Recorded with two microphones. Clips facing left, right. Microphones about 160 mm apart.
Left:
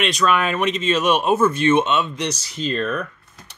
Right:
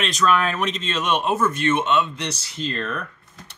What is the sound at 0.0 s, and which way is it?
Speech, 5° left (ahead or behind).